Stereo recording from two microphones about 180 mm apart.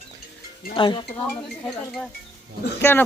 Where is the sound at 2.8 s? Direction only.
15° left (ahead or behind).